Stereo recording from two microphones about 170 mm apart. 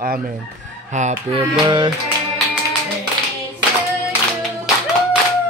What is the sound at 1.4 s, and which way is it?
Music, 25° right (ahead or behind).